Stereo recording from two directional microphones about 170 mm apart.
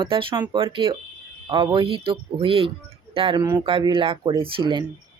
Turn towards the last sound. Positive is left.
turn(degrees=-30)  # may be behind; listen again after turning